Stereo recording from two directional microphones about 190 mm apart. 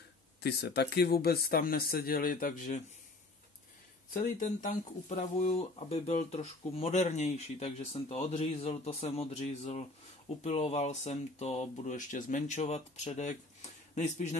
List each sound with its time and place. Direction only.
0.4 s speech: 60° left (ahead or behind)
4.1 s speech: 45° left (ahead or behind)